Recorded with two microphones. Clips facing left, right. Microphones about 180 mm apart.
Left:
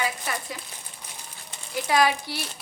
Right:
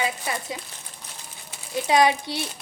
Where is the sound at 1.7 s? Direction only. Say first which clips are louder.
Right 3 dB; 25° right (ahead or behind).